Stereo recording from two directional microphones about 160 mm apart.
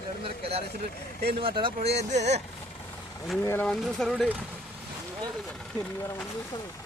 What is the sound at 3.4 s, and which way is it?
Speech, 15° left (ahead or behind).